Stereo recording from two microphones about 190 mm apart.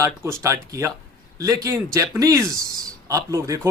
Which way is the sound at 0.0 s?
15° right (ahead or behind).